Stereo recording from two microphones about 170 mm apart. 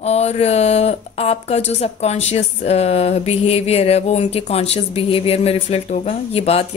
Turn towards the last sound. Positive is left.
turn(degrees=35)  # may be behind; listen again after turning